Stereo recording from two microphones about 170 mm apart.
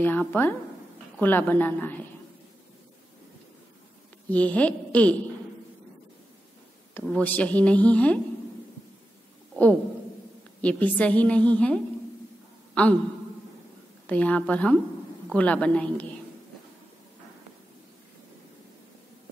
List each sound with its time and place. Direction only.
0.0 s a woman's voice: 10° left (ahead or behind)
4.3 s a woman's voice: 10° left (ahead or behind)
6.9 s a woman's voice: 10° left (ahead or behind)
10.6 s a woman's voice: 10° left (ahead or behind)
14.0 s a woman's voice: 10° left (ahead or behind)